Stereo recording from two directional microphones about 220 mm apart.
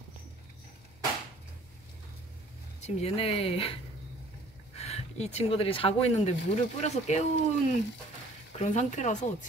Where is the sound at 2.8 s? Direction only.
30° left (ahead or behind).